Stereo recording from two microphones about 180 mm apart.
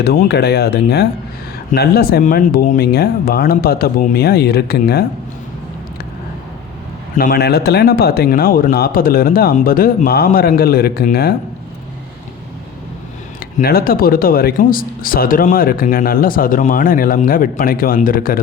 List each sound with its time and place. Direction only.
0.0 s speech: 65° left (ahead or behind)
7.2 s speech: 60° left (ahead or behind)
13.6 s speech: 55° left (ahead or behind)